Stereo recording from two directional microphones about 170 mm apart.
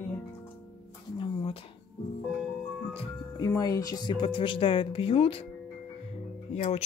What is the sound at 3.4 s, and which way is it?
Speech, 20° left (ahead or behind).